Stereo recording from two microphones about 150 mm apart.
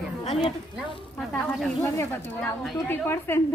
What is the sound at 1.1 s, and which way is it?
Speech, 5° left (ahead or behind).